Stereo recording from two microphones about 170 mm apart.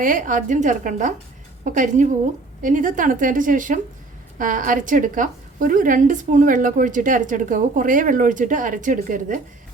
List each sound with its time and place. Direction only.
0.0 s a woman's voice: 50° right (ahead or behind)